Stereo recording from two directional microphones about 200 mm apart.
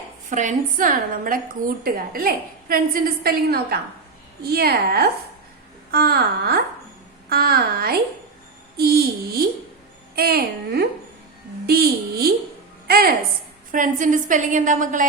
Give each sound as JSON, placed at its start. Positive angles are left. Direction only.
{"t": 0.3, "sound": "a woman's voice", "side_deg": -40}